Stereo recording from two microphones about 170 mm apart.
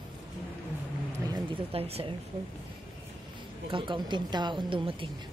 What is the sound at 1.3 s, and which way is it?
Speech, 35° right (ahead or behind).